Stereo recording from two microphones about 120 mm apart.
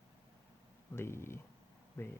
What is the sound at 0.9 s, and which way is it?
Speech, 20° left (ahead or behind).